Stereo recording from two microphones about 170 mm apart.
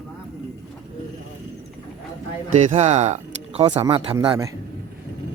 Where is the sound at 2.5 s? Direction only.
40° right (ahead or behind).